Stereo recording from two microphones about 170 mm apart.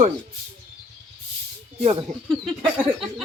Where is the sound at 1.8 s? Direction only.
30° right (ahead or behind).